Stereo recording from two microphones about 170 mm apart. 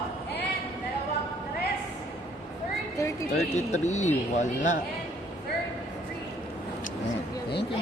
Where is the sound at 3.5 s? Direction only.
45° left (ahead or behind).